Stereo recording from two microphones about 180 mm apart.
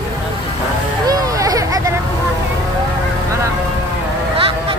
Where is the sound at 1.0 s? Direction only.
20° right (ahead or behind).